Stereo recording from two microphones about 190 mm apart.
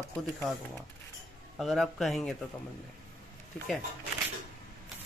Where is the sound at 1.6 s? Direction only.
Centre (ahead or behind).